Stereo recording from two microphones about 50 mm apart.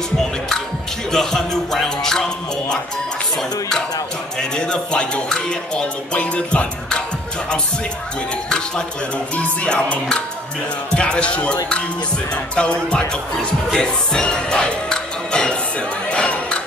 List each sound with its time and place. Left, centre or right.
1.1 s music: centre
4.4 s music: centre
8.5 s speech: centre
9.3 s music: left
16.1 s a sound: left